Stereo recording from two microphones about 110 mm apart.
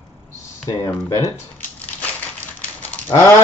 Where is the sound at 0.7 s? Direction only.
35° left (ahead or behind).